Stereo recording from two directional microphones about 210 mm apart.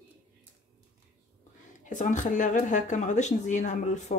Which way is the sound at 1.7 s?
35° left (ahead or behind).